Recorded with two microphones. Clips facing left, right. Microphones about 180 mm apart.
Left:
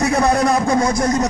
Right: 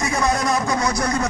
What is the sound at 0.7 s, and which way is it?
Speech, 50° left (ahead or behind).